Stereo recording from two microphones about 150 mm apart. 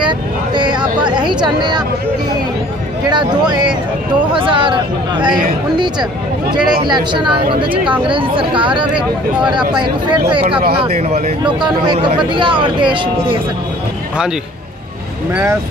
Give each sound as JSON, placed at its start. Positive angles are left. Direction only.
{"t": 0.6, "sound": "a sound", "side_deg": -30}
{"t": 3.1, "sound": "speech", "side_deg": -30}
{"t": 6.8, "sound": "speech", "side_deg": -30}
{"t": 10.8, "sound": "speech", "side_deg": -45}
{"t": 11.4, "sound": "speech", "side_deg": -30}